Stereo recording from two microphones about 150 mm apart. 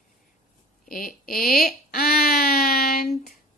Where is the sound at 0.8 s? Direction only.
65° left (ahead or behind).